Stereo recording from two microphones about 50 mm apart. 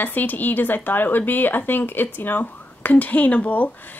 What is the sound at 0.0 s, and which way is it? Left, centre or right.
Speech, left.